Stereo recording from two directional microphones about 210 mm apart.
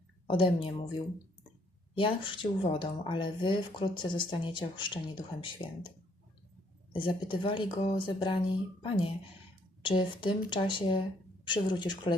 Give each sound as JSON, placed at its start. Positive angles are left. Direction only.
{"t": 0.3, "sound": "speech", "side_deg": 25}
{"t": 2.0, "sound": "speech", "side_deg": 25}
{"t": 6.9, "sound": "speech", "side_deg": 25}